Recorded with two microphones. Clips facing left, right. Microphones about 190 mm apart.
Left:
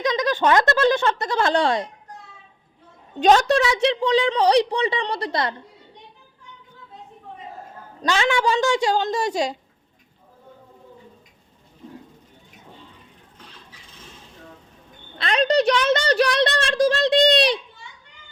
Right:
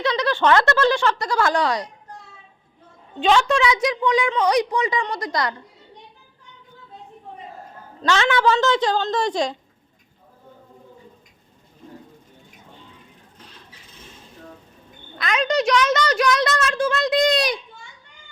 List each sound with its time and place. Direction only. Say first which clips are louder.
0.0 s speech: even; 15° left (ahead or behind)
3.2 s a woman's voice: left 2 dB; 40° left (ahead or behind)
8.0 s a woman's voice: right 2 dB; 15° left (ahead or behind)
15.2 s a woman's voice: left 2 dB; 35° left (ahead or behind)